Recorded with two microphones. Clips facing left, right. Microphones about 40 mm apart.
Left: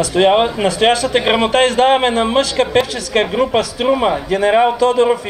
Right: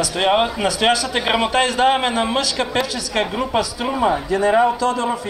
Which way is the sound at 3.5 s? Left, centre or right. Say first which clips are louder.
Left 6 dB; left.